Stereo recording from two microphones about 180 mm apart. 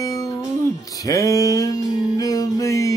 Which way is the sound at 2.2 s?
20° left (ahead or behind).